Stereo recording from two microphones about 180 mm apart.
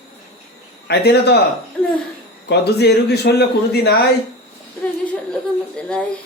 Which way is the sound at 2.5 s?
65° left (ahead or behind).